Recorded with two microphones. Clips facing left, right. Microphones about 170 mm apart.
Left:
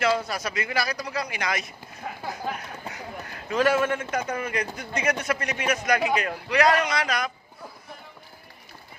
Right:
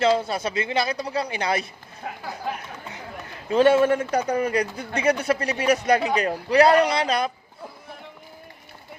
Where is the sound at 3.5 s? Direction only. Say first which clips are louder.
Right 6 dB; 30° right (ahead or behind).